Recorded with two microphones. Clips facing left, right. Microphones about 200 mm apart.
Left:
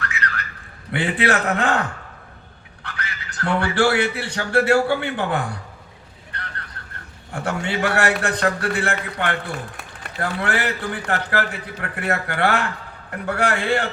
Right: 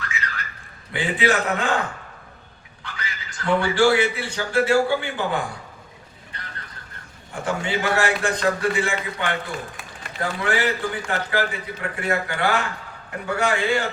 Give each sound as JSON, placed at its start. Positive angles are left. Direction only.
{"t": 0.0, "sound": "a sound", "side_deg": 65}
{"t": 0.9, "sound": "a man's voice", "side_deg": 65}
{"t": 2.8, "sound": "speech", "side_deg": 70}
{"t": 7.4, "sound": "a man's voice", "side_deg": 65}